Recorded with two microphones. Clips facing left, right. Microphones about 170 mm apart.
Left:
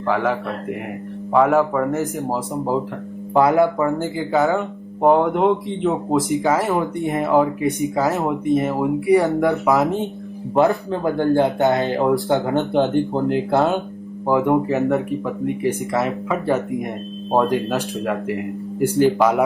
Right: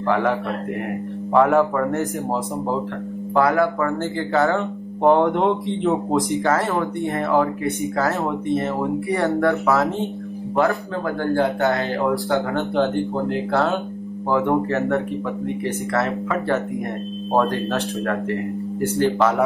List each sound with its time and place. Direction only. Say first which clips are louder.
0.0 s speech: even; centre (ahead or behind)
3.3 s speech: left 3 dB; 20° left (ahead or behind)
4.5 s speech: left 1 dB; 5° left (ahead or behind)
6.6 s speech: left 2 dB; 20° left (ahead or behind)